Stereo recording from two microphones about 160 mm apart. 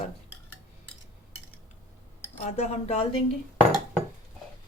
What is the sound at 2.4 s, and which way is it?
Speech, 45° left (ahead or behind).